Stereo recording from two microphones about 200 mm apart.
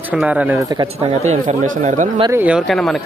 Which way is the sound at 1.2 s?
40° right (ahead or behind).